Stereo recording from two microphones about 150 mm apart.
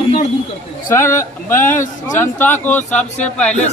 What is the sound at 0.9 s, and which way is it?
Speech, 15° left (ahead or behind).